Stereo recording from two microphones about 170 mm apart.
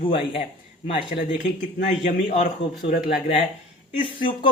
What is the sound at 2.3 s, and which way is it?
Speech, 45° left (ahead or behind).